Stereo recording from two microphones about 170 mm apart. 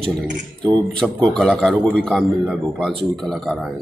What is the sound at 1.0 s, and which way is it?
A man's voice, centre (ahead or behind).